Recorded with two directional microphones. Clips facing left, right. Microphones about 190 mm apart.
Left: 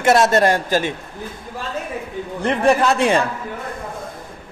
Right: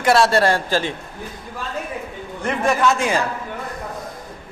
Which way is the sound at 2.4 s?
35° left (ahead or behind).